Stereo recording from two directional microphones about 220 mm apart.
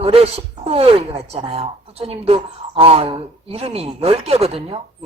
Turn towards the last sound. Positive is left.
turn(degrees=-25)  # may be behind; listen again after turning